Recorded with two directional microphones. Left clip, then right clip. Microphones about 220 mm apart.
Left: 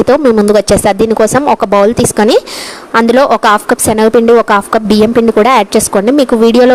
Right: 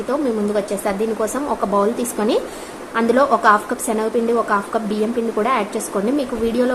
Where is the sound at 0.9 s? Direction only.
45° left (ahead or behind).